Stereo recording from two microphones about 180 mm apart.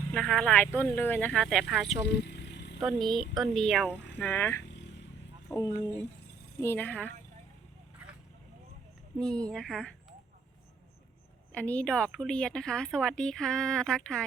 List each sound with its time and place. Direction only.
0.1 s a woman's voice: centre (ahead or behind)
2.2 s vehicle: 70° left (ahead or behind)
2.8 s a woman's voice: centre (ahead or behind)
5.5 s speech: 20° left (ahead or behind)
9.1 s a woman's voice: 5° left (ahead or behind)
11.5 s a woman's voice: 5° left (ahead or behind)